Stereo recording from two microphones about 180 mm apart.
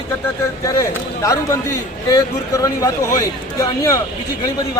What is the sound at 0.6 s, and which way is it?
A man's voice, 15° left (ahead or behind).